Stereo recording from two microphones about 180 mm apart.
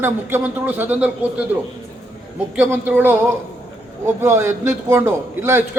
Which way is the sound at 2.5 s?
10° right (ahead or behind).